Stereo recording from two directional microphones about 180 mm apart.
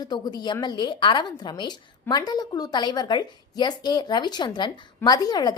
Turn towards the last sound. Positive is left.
turn(degrees=20)  # may be behind; listen again after turning